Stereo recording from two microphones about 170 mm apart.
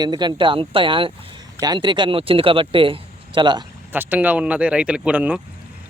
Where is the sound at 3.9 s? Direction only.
10° right (ahead or behind).